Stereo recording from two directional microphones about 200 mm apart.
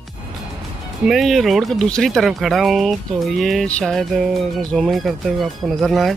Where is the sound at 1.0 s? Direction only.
Centre (ahead or behind).